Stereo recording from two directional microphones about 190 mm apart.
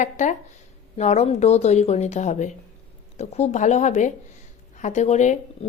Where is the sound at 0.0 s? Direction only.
40° left (ahead or behind).